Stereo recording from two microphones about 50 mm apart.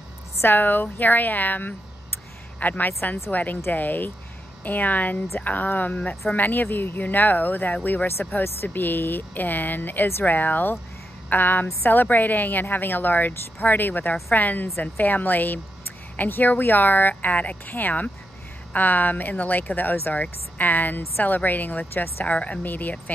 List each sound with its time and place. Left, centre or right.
0.4 s a woman's voice: left
22.2 s speech: left